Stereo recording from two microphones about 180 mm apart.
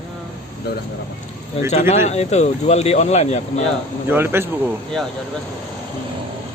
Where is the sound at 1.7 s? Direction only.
35° left (ahead or behind).